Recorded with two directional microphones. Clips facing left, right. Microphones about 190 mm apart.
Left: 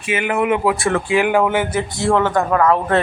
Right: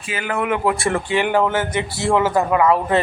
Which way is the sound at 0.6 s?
Centre (ahead or behind).